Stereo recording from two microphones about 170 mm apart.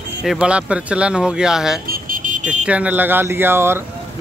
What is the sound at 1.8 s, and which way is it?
Vehicle, 55° right (ahead or behind).